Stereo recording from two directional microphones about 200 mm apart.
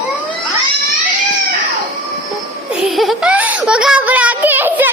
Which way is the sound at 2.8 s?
Centre (ahead or behind).